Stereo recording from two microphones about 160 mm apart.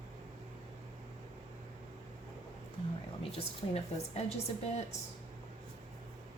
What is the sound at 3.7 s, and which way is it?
Speech, 40° left (ahead or behind).